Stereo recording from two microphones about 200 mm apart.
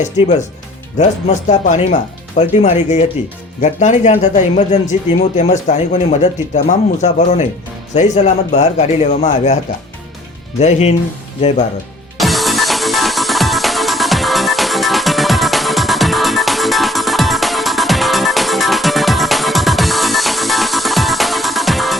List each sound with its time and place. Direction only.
0.0 s a man's voice: 35° left (ahead or behind)
10.6 s a man's voice: 35° left (ahead or behind)
12.1 s music: centre (ahead or behind)